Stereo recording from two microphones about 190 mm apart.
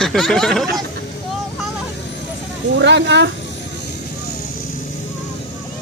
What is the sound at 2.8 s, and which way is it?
Speech, 70° right (ahead or behind).